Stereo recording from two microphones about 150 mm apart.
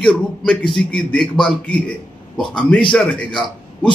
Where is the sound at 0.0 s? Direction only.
5° left (ahead or behind).